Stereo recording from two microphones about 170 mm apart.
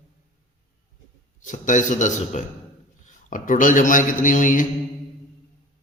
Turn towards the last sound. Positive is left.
turn(degrees=50)  # may be behind; listen again after turning